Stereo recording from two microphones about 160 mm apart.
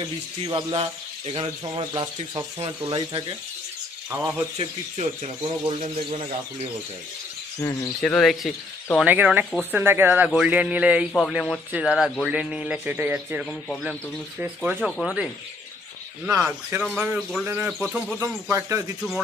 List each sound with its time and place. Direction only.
0.0 s speech: 30° right (ahead or behind)
4.1 s a man's voice: 15° right (ahead or behind)
4.6 s speech: 40° right (ahead or behind)
7.6 s speech: 20° left (ahead or behind)
8.0 s speech: centre (ahead or behind)
9.0 s a man's voice: 10° right (ahead or behind)
14.8 s speech: centre (ahead or behind)
16.4 s a man's voice: 10° right (ahead or behind)
17.5 s a man's voice: 15° right (ahead or behind)
17.7 s speech: centre (ahead or behind)
18.2 s speech: 20° right (ahead or behind)